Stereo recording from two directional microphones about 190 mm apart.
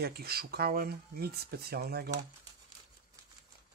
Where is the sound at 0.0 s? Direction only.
55° right (ahead or behind).